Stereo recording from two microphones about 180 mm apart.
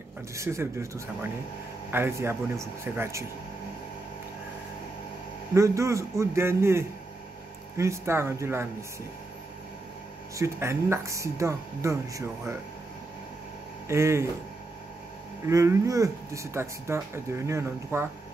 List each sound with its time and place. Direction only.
0.4 s speech: 15° right (ahead or behind)
5.5 s speech: 15° right (ahead or behind)
10.3 s speech: 15° right (ahead or behind)
13.8 s speech: 15° right (ahead or behind)
15.4 s speech: 15° right (ahead or behind)